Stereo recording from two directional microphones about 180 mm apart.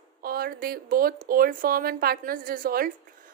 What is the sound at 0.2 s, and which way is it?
A woman's voice, 55° right (ahead or behind).